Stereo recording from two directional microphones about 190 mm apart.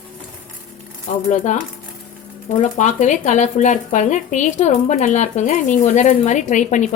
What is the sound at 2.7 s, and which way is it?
Speech, 40° left (ahead or behind).